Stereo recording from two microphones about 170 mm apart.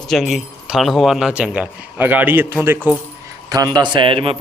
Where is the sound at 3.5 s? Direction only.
25° right (ahead or behind).